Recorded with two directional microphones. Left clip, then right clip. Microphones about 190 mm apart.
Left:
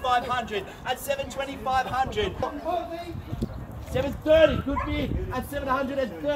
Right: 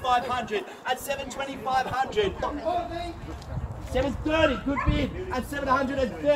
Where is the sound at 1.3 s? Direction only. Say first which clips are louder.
Right 1 dB; 20° left (ahead or behind).